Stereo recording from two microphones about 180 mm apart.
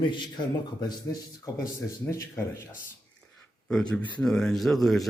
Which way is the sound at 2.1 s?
15° left (ahead or behind).